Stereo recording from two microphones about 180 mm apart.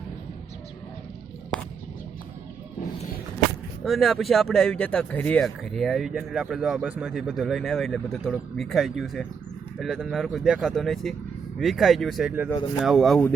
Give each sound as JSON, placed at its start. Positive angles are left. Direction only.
{"t": 3.8, "sound": "speech", "side_deg": 0}